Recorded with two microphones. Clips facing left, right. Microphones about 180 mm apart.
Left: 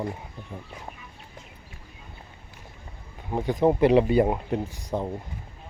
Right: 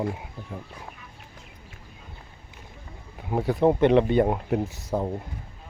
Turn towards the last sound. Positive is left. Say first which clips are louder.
# right 2 dB
turn(degrees=-5)  # may be behind; listen again after turning